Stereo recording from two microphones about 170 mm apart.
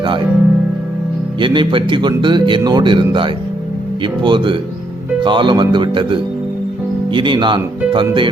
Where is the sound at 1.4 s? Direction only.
30° right (ahead or behind).